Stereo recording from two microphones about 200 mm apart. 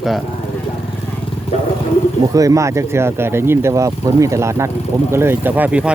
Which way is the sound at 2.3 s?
15° right (ahead or behind).